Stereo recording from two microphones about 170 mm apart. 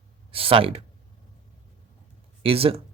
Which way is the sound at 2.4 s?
35° right (ahead or behind).